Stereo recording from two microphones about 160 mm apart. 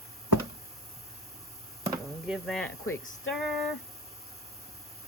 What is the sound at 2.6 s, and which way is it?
Speech, 10° left (ahead or behind).